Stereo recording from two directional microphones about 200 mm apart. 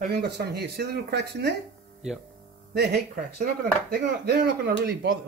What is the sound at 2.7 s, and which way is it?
A man's voice, 55° right (ahead or behind).